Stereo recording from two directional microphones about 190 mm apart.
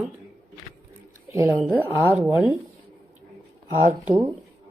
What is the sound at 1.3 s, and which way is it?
Speech, 15° right (ahead or behind).